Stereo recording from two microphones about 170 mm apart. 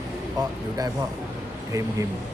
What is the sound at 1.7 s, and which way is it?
Speech, 20° right (ahead or behind).